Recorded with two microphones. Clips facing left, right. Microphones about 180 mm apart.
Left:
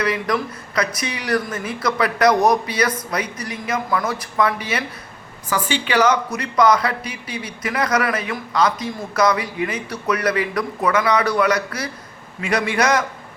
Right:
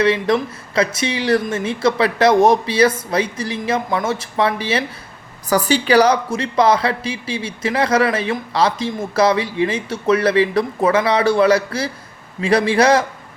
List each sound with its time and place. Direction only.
0.0 s speech: 25° right (ahead or behind)
5.5 s a man's voice: 40° right (ahead or behind)